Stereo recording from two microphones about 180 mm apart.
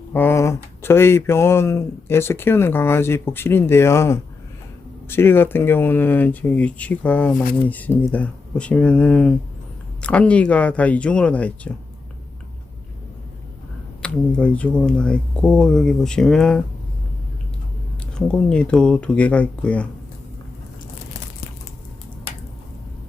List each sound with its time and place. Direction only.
0.1 s speech: 10° left (ahead or behind)
14.0 s speech: 5° left (ahead or behind)
18.3 s speech: 5° left (ahead or behind)